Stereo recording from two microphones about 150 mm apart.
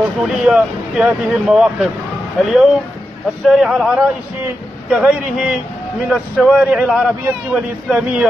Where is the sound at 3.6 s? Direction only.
Centre (ahead or behind).